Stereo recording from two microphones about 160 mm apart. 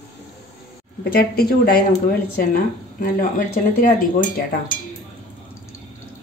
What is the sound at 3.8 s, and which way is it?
Speech, 70° left (ahead or behind).